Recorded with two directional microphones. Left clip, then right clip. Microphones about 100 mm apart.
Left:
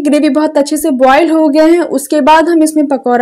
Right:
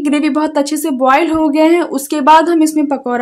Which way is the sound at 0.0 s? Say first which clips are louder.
Left 4 dB; 30° left (ahead or behind).